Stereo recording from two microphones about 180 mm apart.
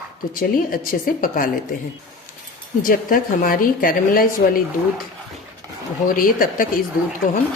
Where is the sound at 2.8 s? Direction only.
50° left (ahead or behind).